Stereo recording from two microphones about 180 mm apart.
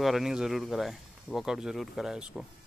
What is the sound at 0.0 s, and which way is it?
Speech, centre (ahead or behind).